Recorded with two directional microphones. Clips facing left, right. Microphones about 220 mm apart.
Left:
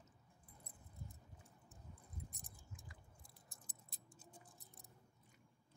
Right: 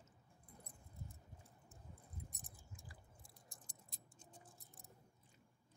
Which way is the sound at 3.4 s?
5° left (ahead or behind).